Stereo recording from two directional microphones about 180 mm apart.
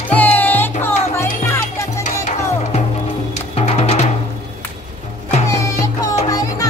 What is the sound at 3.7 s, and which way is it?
Music, 35° left (ahead or behind).